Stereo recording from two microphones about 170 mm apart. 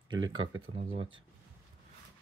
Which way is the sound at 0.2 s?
25° right (ahead or behind).